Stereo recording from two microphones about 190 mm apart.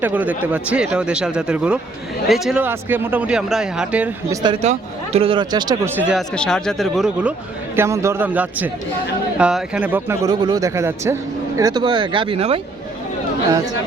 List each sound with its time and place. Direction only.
0.0 s speech: 10° right (ahead or behind)
4.3 s speech: 20° right (ahead or behind)
4.6 s speech: 35° right (ahead or behind)
6.0 s speech: 5° right (ahead or behind)
7.8 s speech: 15° right (ahead or behind)